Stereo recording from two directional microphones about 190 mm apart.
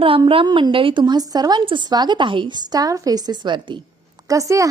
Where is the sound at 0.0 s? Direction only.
30° right (ahead or behind).